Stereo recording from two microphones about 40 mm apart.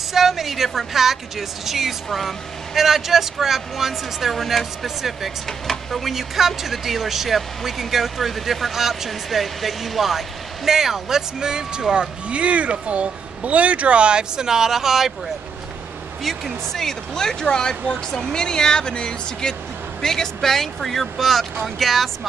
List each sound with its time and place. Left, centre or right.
0.1 s a woman's voice: centre
16.3 s speech: centre